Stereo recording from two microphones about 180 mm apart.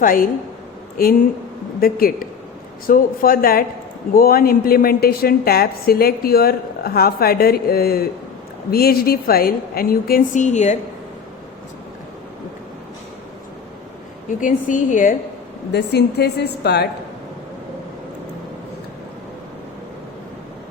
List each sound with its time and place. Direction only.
0.0 s a woman's voice: 50° left (ahead or behind)
14.3 s a woman's voice: 45° left (ahead or behind)
15.7 s a woman's voice: 65° left (ahead or behind)